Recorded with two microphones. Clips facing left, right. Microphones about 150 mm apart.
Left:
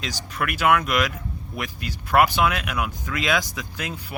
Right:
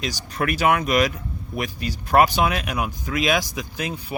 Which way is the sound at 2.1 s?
25° right (ahead or behind).